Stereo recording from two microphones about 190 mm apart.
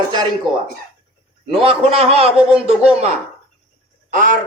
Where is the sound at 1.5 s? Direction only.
30° right (ahead or behind).